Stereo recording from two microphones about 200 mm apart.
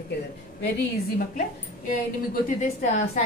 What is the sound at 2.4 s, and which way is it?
Speech, 35° left (ahead or behind).